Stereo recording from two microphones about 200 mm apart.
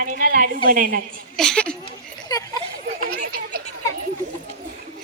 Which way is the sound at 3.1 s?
50° right (ahead or behind).